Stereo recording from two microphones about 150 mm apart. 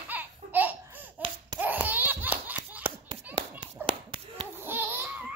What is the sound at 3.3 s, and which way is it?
Clapping, 35° right (ahead or behind).